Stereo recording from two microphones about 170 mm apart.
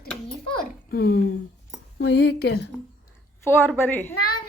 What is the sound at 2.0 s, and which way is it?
Speech, 80° left.